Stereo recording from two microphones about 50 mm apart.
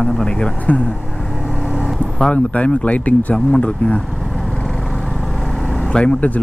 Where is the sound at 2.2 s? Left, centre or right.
Left.